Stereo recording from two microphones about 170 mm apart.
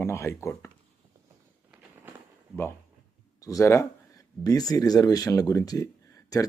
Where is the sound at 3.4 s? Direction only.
20° left (ahead or behind).